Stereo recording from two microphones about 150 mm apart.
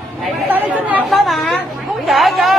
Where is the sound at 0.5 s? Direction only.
10° right (ahead or behind).